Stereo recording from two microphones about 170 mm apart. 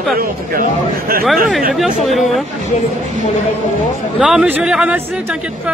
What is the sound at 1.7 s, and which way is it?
Speech, centre (ahead or behind).